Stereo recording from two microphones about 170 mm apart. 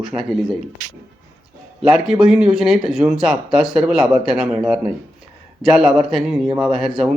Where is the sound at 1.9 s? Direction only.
Centre (ahead or behind).